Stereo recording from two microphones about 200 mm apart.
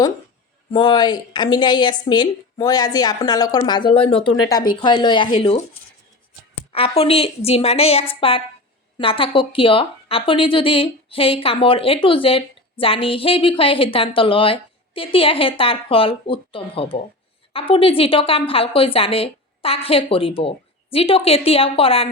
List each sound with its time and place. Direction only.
0.7 s speech: 20° left (ahead or behind)
6.7 s speech: 30° left (ahead or behind)